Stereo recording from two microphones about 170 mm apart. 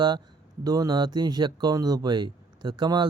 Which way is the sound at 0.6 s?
20° right (ahead or behind).